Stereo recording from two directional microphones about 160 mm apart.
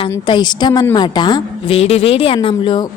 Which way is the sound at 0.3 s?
30° left (ahead or behind).